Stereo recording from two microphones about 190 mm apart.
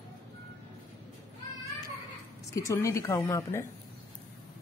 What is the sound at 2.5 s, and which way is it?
Speech, 15° left (ahead or behind).